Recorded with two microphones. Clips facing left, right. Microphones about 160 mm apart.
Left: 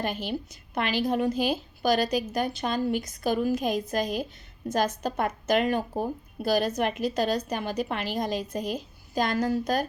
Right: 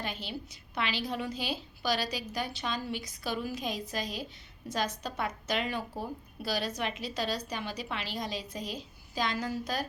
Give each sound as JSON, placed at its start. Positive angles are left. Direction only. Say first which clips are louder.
{"t": 0.0, "sound": "speech", "louder": "left 8 dB", "side_deg": 50}